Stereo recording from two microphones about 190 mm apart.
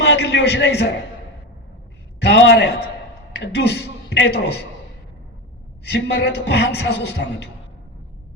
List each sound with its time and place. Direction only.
0.0 s a man's voice: 65° left (ahead or behind)
2.2 s a man's voice: 70° left (ahead or behind)
5.9 s a woman's voice: 60° left (ahead or behind)